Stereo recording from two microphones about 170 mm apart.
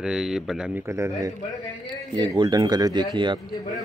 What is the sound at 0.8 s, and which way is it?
A man's voice, 15° right (ahead or behind).